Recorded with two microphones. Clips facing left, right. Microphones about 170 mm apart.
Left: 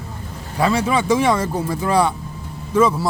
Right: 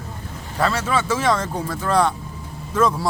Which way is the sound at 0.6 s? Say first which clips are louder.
Left 3 dB; 10° left (ahead or behind).